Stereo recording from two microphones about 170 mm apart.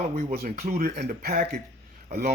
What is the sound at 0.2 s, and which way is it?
Speech, 55° right (ahead or behind).